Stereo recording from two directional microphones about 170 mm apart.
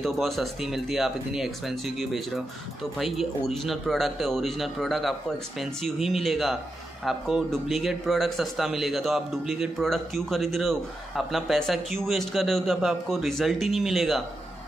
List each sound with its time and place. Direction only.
0.0 s speech: centre (ahead or behind)